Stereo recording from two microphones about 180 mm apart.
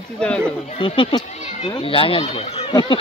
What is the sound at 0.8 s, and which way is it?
Speech, 25° left (ahead or behind).